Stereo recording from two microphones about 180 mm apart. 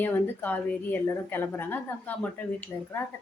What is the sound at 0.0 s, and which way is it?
A woman's voice, 10° left (ahead or behind).